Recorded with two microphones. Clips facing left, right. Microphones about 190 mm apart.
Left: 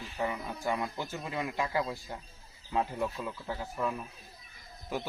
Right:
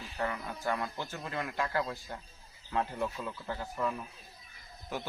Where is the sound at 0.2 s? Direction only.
10° left (ahead or behind).